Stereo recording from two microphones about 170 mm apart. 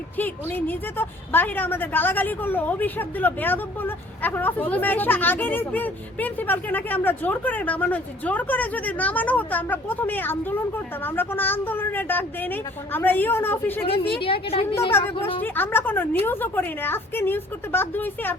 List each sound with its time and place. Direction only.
0.2 s a woman's voice: 10° left (ahead or behind)
13.8 s a woman's voice: 30° left (ahead or behind)
14.9 s a woman's voice: 15° left (ahead or behind)